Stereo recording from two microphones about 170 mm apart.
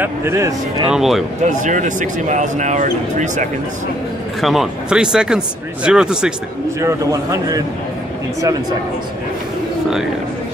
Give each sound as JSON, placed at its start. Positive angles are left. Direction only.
{"t": 0.0, "sound": "speech", "side_deg": -15}
{"t": 0.8, "sound": "speech", "side_deg": 0}
{"t": 1.5, "sound": "speech", "side_deg": -45}
{"t": 4.4, "sound": "speech", "side_deg": 0}
{"t": 6.8, "sound": "a man's voice", "side_deg": -20}